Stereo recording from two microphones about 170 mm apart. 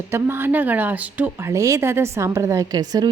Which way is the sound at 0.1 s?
15° right (ahead or behind).